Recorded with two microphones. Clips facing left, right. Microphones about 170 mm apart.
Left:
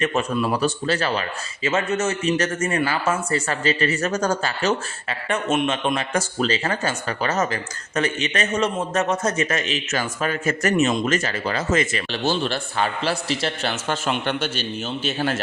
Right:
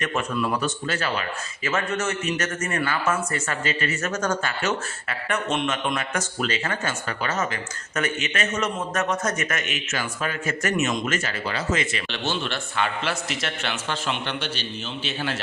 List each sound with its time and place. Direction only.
0.0 s speech: 25° left (ahead or behind)
1.6 s a man's voice: 25° left (ahead or behind); by 15.4 s 45° left (ahead or behind)